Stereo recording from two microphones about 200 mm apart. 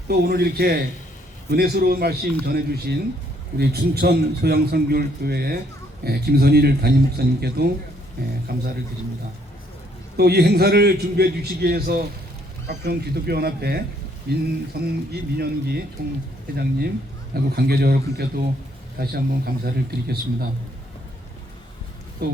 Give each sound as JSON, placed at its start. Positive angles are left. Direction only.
{"t": 0.1, "sound": "a man's voice", "side_deg": -50}
{"t": 10.2, "sound": "a man's voice", "side_deg": -55}
{"t": 17.5, "sound": "a man's voice", "side_deg": -50}
{"t": 22.2, "sound": "speech", "side_deg": -50}